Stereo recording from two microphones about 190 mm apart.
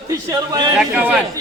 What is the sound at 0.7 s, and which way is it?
Speech, 5° right (ahead or behind).